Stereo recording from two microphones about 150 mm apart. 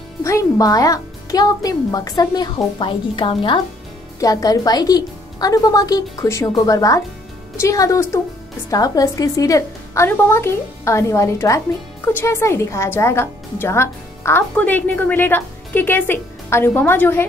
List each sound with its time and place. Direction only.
0.2 s a woman's voice: 20° left (ahead or behind)